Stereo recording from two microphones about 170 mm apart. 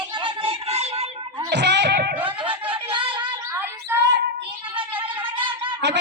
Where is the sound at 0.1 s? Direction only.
30° right (ahead or behind).